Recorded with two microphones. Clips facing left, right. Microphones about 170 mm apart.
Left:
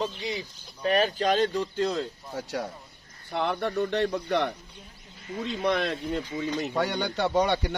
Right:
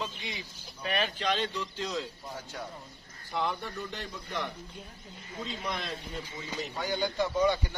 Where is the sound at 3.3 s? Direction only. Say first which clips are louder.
Left 5 dB; 65° left (ahead or behind).